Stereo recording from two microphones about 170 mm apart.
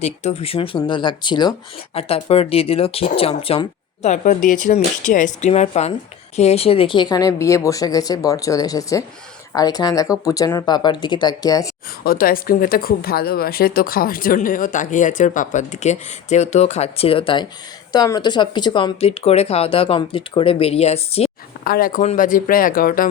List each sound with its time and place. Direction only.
0.0 s speech: 40° left (ahead or behind); by 11.7 s 20° left (ahead or behind)
12.0 s speech: 55° left (ahead or behind); by 21.2 s 35° left (ahead or behind)
21.6 s speech: 60° left (ahead or behind)